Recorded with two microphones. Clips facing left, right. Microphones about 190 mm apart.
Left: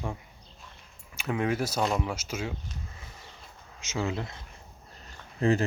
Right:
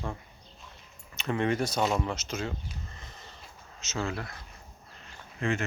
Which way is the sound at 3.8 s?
15° left (ahead or behind).